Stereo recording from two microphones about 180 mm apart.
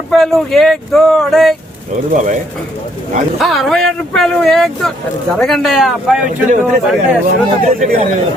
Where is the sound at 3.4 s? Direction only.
Centre (ahead or behind).